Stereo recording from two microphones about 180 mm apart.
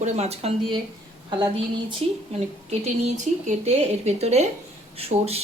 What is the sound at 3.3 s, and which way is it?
Speech, 45° right (ahead or behind).